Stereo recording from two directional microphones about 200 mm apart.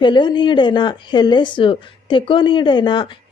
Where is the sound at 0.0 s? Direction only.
25° left (ahead or behind).